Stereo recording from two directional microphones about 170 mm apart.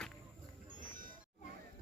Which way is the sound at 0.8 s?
55° right (ahead or behind).